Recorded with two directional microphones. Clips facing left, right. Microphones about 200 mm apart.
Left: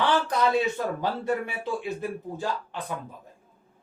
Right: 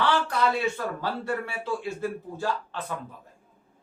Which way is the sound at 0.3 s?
20° left (ahead or behind).